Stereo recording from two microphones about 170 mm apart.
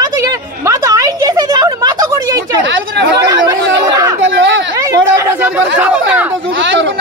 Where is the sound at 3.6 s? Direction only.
90° right.